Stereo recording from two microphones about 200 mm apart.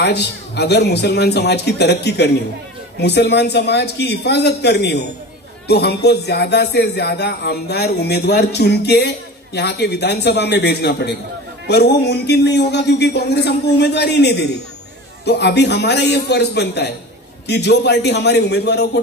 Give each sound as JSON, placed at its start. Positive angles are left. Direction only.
{"t": 0.0, "sound": "speech", "side_deg": 55}